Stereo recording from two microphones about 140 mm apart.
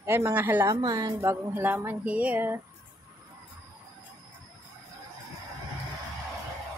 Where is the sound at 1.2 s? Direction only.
15° right (ahead or behind).